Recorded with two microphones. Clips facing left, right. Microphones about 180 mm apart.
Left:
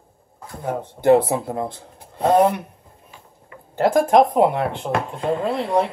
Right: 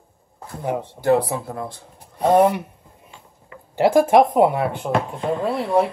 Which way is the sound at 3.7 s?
5° right (ahead or behind).